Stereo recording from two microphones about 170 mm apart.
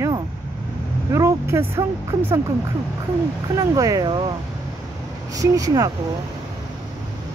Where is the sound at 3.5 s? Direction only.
20° right (ahead or behind).